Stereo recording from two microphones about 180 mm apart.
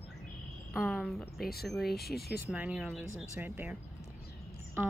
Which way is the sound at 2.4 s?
10° right (ahead or behind).